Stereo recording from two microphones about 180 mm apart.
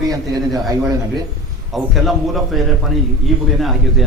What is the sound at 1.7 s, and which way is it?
A man's voice, centre (ahead or behind).